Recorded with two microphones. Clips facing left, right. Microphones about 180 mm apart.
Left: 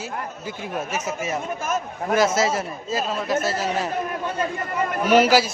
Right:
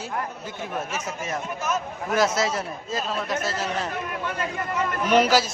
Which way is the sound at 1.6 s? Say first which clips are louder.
Left 1 dB; 50° left (ahead or behind).